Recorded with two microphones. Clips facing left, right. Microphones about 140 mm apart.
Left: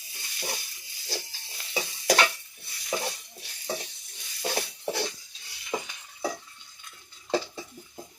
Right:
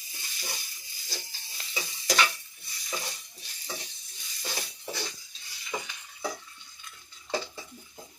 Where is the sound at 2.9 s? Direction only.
60° left (ahead or behind).